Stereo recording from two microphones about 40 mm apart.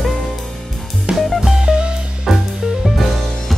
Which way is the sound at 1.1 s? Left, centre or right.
Centre.